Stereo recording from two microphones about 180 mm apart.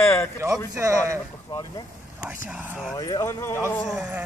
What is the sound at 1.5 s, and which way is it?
Vehicle, 20° left (ahead or behind).